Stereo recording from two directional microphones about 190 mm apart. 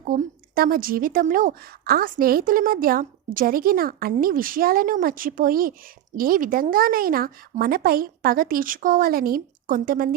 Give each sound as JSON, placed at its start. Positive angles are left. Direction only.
{"t": 0.0, "sound": "a woman's voice", "side_deg": -45}